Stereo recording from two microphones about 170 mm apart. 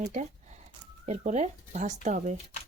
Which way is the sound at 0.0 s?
45° right (ahead or behind).